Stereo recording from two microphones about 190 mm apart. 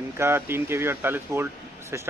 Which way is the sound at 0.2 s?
15° right (ahead or behind).